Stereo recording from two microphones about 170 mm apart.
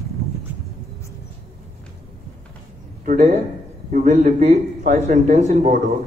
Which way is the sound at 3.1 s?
45° right (ahead or behind).